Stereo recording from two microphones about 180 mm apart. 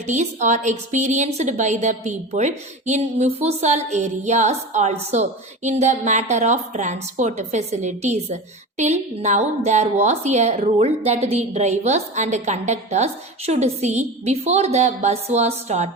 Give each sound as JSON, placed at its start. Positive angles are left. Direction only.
{"t": 0.0, "sound": "a woman's voice", "side_deg": -40}